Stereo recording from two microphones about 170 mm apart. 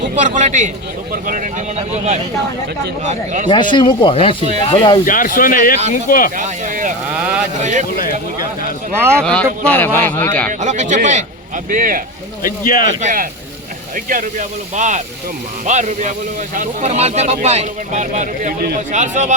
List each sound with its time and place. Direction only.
0.2 s a man's voice: 45° right (ahead or behind)
3.5 s speech: 25° left (ahead or behind)
5.0 s speech: 55° left (ahead or behind)
6.3 s a man's voice: 50° right (ahead or behind)
7.2 s speech: 10° right (ahead or behind)
7.6 s a man's voice: 45° right (ahead or behind)
9.0 s speech: 15° right (ahead or behind)
9.2 s speech: 5° left (ahead or behind)
10.6 s a man's voice: 45° right (ahead or behind)
12.4 s speech: 55° left (ahead or behind)
13.0 s a man's voice: 50° right (ahead or behind)